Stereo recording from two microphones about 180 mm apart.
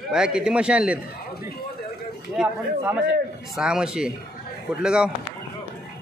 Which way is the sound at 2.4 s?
5° right (ahead or behind).